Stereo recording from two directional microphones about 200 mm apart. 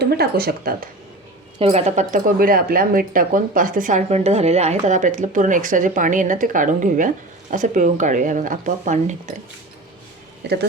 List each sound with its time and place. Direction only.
0.0 s speech: 50° right (ahead or behind)
1.5 s speech: 30° right (ahead or behind)
10.4 s speech: 55° right (ahead or behind)